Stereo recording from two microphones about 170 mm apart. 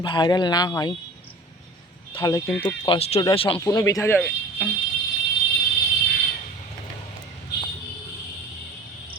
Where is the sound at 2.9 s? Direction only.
35° left (ahead or behind); by 4.7 s 10° left (ahead or behind).